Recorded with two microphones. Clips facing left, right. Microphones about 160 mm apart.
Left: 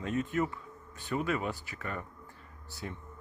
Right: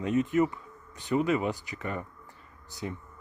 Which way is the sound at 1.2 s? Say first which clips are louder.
Right 5 dB; 15° right (ahead or behind).